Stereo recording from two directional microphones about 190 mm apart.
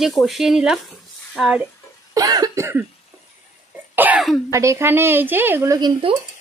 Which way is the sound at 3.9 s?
5° right (ahead or behind).